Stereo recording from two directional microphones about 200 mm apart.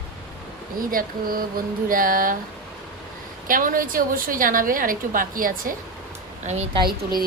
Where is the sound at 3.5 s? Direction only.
45° right (ahead or behind).